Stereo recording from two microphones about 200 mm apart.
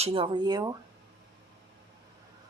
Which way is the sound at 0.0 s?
25° right (ahead or behind).